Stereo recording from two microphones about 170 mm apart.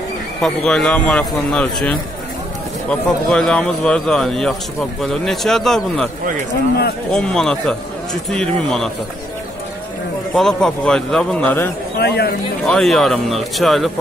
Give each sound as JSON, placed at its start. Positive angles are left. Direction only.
{"t": 0.4, "sound": "a man's voice", "side_deg": 5}
{"t": 7.1, "sound": "a man's voice", "side_deg": 5}
{"t": 10.3, "sound": "a man's voice", "side_deg": 5}
{"t": 12.0, "sound": "speech", "side_deg": 70}
{"t": 12.6, "sound": "a man's voice", "side_deg": 0}